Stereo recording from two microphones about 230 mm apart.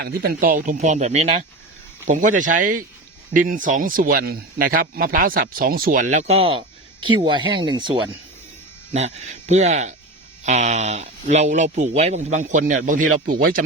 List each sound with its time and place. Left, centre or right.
0.0 s speech: right